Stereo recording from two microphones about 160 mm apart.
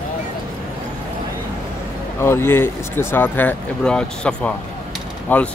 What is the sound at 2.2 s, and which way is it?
Speech, 15° left (ahead or behind).